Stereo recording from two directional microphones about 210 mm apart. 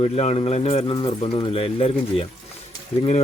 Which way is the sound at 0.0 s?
30° left (ahead or behind).